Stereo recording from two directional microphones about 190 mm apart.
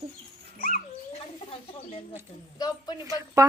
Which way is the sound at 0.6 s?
50° left (ahead or behind).